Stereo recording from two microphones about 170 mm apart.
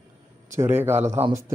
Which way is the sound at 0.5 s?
10° right (ahead or behind).